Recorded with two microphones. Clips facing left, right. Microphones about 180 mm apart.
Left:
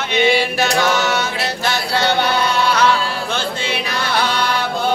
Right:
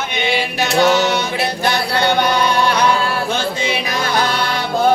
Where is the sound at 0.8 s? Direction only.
20° right (ahead or behind).